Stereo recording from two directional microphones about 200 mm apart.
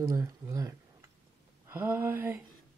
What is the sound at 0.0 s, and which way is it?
Speech, 15° right (ahead or behind).